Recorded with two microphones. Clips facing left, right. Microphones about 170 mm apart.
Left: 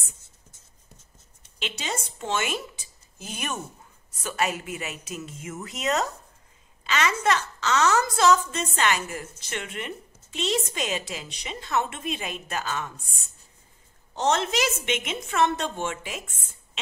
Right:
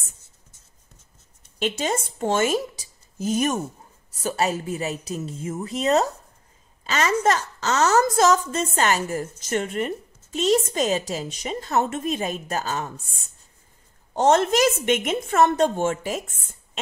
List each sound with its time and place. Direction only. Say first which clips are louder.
1.6 s a woman's voice: right 8 dB; 45° right (ahead or behind)
14.1 s a woman's voice: right 6 dB; 50° right (ahead or behind)